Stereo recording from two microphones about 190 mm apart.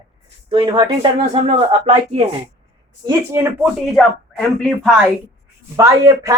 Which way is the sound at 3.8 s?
5° left (ahead or behind).